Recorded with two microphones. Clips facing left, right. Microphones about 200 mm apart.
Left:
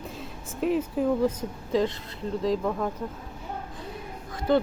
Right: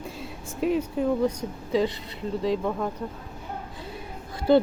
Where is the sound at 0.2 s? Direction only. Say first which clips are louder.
Right 1 dB; centre (ahead or behind).